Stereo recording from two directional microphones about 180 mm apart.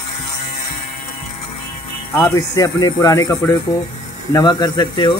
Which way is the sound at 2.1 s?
15° left (ahead or behind).